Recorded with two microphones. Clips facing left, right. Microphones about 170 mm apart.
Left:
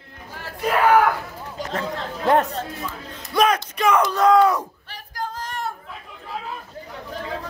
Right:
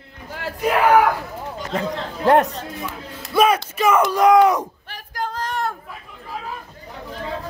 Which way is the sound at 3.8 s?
5° right (ahead or behind).